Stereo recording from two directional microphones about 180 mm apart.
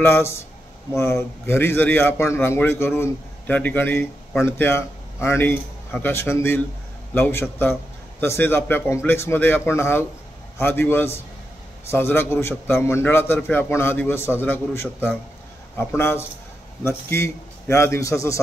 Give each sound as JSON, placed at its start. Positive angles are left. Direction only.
{"t": 0.0, "sound": "a man's voice", "side_deg": 15}